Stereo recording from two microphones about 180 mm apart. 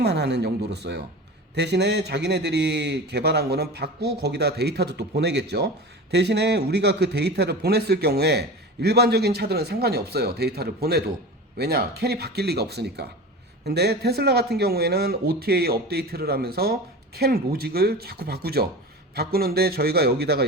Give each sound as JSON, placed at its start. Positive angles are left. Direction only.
{"t": 0.0, "sound": "a man's voice", "side_deg": -70}